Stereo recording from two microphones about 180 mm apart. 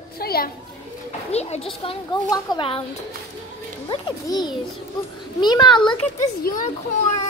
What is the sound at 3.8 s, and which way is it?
A woman's voice, 25° left (ahead or behind).